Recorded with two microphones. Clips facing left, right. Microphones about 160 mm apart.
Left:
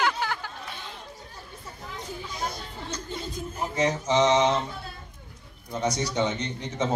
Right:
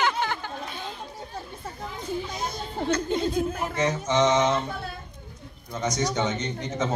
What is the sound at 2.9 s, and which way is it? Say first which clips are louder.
Speech: right 11 dB; 65° right (ahead or behind).